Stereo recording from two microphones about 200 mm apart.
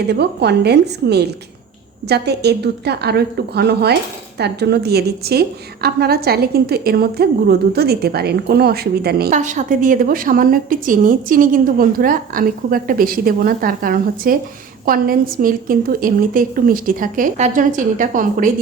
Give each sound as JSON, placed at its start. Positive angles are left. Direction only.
{"t": 0.1, "sound": "a woman's voice", "side_deg": -55}
{"t": 9.3, "sound": "a woman's voice", "side_deg": -35}